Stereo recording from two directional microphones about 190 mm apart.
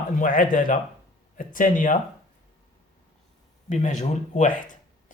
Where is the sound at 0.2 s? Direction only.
45° left (ahead or behind).